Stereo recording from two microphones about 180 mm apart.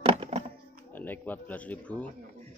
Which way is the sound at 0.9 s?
10° left (ahead or behind).